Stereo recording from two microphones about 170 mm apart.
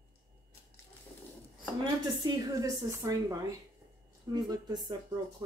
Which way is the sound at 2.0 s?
20° right (ahead or behind).